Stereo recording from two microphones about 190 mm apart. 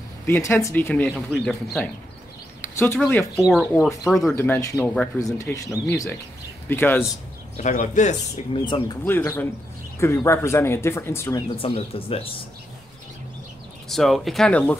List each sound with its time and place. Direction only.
0.3 s speech: 15° left (ahead or behind)
3.0 s speech: 10° left (ahead or behind)
4.4 s speech: 15° left (ahead or behind)
7.5 s speech: 40° left (ahead or behind)
8.6 s speech: 25° left (ahead or behind)
9.0 s speech: 10° left (ahead or behind)
11.5 s speech: 30° left (ahead or behind)
13.8 s speech: centre (ahead or behind)